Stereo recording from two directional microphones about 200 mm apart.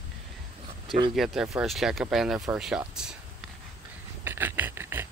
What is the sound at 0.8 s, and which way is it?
Speech, 25° right (ahead or behind).